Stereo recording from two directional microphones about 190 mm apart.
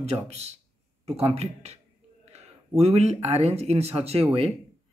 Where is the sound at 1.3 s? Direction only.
35° right (ahead or behind).